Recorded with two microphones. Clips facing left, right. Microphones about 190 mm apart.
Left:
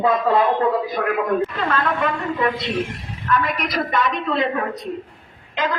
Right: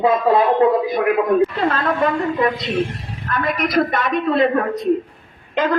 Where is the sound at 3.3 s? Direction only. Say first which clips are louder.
Right 1 dB; 50° right (ahead or behind).